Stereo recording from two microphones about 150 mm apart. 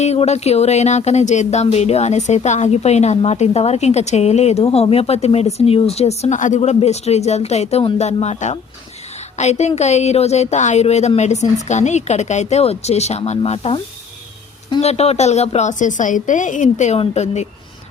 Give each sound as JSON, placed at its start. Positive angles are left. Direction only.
{"t": 0.0, "sound": "speech", "side_deg": 45}
{"t": 14.8, "sound": "speech", "side_deg": 45}